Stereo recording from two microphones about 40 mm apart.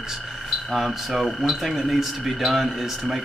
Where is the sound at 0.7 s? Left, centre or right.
Centre.